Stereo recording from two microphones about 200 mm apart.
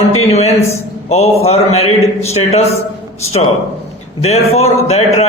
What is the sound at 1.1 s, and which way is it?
A man's voice, 30° left (ahead or behind).